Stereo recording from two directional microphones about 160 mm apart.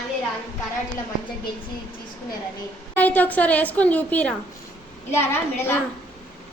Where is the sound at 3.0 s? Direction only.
10° left (ahead or behind).